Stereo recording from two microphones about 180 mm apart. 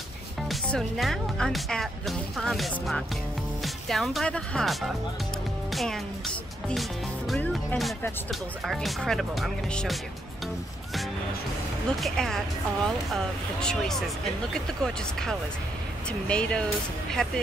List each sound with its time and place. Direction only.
0.4 s speech: centre (ahead or behind)
5.7 s music: centre (ahead or behind)
6.7 s speech: centre (ahead or behind)
12.0 s speech: 5° left (ahead or behind)
16.1 s speech: 5° left (ahead or behind)